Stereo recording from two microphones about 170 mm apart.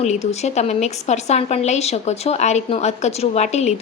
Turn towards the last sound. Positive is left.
turn(degrees=40)  # may be behind; listen again after turning